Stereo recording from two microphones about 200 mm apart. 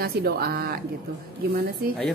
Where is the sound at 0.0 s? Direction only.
50° right (ahead or behind).